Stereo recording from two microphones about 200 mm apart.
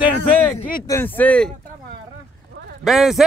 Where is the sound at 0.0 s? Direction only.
25° left (ahead or behind).